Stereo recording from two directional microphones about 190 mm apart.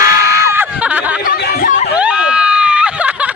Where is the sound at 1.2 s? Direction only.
50° left (ahead or behind).